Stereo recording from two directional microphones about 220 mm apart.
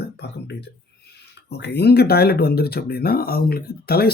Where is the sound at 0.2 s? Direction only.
50° left (ahead or behind).